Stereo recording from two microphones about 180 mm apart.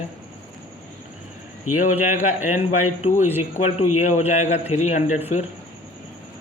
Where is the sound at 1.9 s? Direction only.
10° right (ahead or behind).